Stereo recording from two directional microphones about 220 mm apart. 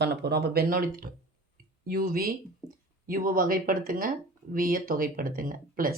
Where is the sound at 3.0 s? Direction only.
40° right (ahead or behind).